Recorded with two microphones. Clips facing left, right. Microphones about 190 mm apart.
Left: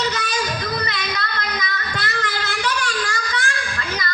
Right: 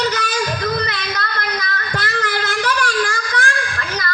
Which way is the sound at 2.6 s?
50° right (ahead or behind).